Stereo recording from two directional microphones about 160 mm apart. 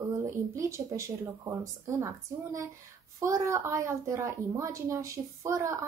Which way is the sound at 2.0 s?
20° right (ahead or behind).